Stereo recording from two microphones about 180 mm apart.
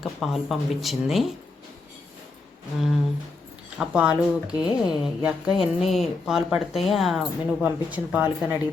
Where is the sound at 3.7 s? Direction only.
5° right (ahead or behind).